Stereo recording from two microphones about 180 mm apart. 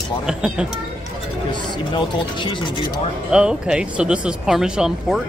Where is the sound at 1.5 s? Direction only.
25° left (ahead or behind).